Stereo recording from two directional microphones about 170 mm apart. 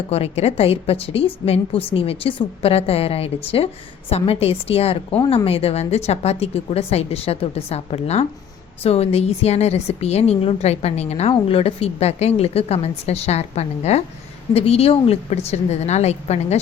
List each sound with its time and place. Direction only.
0.1 s a woman's voice: 35° left (ahead or behind)